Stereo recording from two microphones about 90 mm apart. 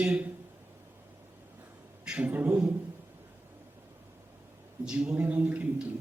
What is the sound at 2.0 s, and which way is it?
Speech, 15° right (ahead or behind).